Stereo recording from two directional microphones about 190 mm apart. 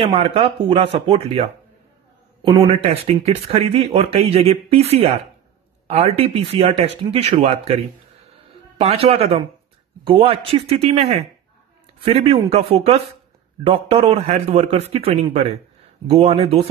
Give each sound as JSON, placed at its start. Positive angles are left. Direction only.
{"t": 0.0, "sound": "speech", "side_deg": -30}